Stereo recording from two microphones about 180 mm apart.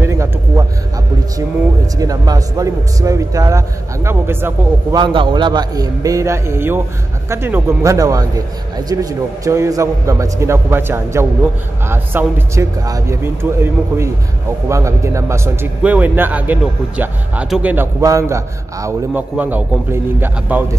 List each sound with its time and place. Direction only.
0.0 s a sound: 15° right (ahead or behind)
2.0 s a man's voice: 20° right (ahead or behind)
4.9 s a man's voice: 25° right (ahead or behind); by 20.6 s 10° right (ahead or behind)